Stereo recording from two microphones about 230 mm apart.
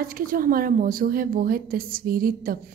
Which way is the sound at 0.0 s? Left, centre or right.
Right.